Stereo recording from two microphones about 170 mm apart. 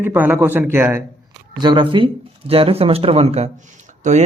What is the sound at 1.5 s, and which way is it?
A man's voice, 25° right (ahead or behind).